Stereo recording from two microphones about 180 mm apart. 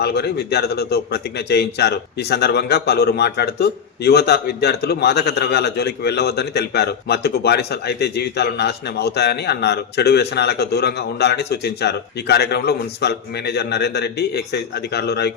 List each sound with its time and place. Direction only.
0.0 s a man's voice: 65° left (ahead or behind)